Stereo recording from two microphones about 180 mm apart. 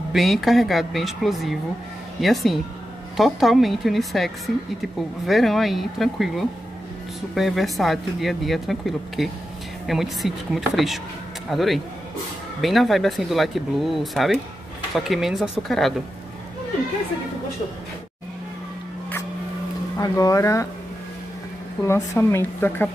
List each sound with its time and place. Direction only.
0.1 s speech: centre (ahead or behind)
20.0 s a woman's voice: 20° left (ahead or behind)
21.8 s a woman's voice: 15° left (ahead or behind)